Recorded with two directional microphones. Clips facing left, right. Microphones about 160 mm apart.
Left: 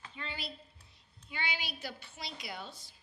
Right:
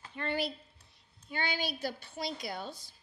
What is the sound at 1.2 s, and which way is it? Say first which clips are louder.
A woman's voice: right 5 dB; 45° right (ahead or behind).